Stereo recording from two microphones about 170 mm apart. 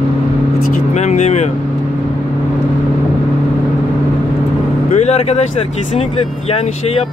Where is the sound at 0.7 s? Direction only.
40° left (ahead or behind).